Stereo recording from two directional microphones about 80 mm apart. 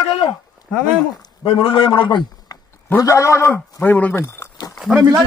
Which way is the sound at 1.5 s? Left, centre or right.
Left.